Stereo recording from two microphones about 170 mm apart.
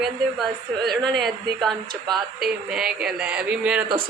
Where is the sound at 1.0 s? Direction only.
Centre (ahead or behind).